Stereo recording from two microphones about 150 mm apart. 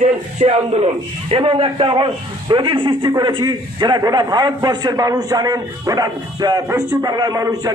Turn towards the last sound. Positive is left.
turn(degrees=-25)  # may be behind; listen again after turning